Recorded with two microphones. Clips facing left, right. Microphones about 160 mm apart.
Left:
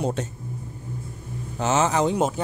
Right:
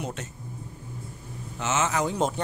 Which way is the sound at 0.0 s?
35° left (ahead or behind).